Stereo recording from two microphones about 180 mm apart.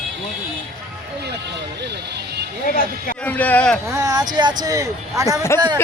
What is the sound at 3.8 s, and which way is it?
Speech, 20° right (ahead or behind).